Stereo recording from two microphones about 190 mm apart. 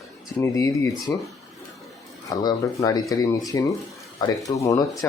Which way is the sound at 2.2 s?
20° left (ahead or behind).